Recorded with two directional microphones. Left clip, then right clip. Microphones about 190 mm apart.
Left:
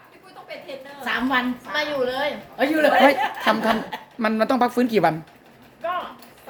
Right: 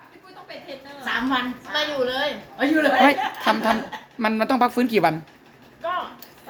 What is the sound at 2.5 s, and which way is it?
Speech, 45° left (ahead or behind).